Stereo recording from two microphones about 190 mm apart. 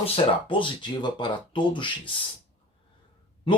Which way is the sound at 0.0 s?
25° left (ahead or behind).